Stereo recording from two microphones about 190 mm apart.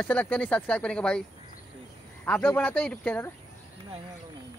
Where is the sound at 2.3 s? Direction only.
5° left (ahead or behind).